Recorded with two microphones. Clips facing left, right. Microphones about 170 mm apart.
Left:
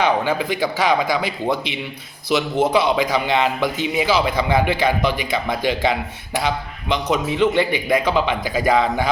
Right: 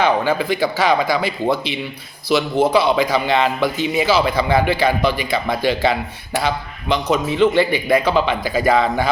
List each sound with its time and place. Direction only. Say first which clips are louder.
0.0 s a man's voice: right 2 dB; 15° left (ahead or behind)